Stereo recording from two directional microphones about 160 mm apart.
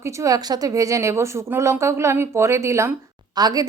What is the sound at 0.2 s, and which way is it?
A woman's voice, 25° right (ahead or behind).